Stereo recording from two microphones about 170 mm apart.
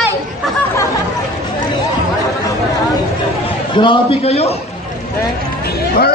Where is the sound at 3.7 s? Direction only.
30° left (ahead or behind).